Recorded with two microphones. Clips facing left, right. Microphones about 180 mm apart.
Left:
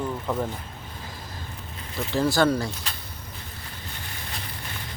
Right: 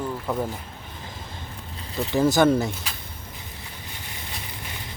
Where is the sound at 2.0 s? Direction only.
20° right (ahead or behind).